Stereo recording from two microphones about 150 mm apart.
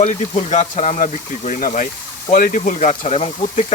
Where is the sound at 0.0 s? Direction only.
50° left (ahead or behind).